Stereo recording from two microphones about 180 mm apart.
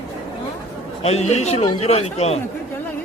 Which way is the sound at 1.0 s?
35° left (ahead or behind).